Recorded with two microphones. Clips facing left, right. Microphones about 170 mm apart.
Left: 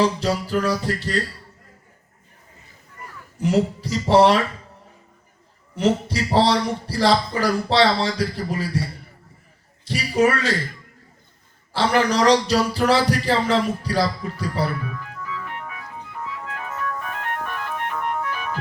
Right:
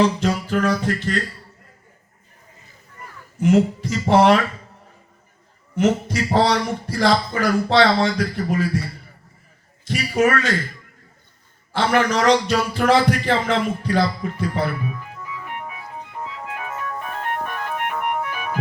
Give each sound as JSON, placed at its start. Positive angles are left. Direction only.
{"t": 0.0, "sound": "a man's voice", "side_deg": 35}
{"t": 3.4, "sound": "a man's voice", "side_deg": 35}
{"t": 5.7, "sound": "a man's voice", "side_deg": 35}
{"t": 9.8, "sound": "a man's voice", "side_deg": 30}
{"t": 11.7, "sound": "a man's voice", "side_deg": 35}
{"t": 14.8, "sound": "music", "side_deg": -15}